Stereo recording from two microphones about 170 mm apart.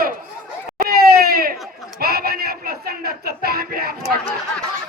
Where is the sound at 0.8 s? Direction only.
65° right (ahead or behind).